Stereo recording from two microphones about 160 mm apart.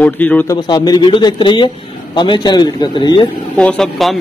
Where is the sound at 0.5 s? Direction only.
25° left (ahead or behind).